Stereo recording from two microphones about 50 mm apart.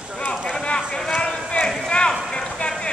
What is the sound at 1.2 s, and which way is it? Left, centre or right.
Clip-clop, left.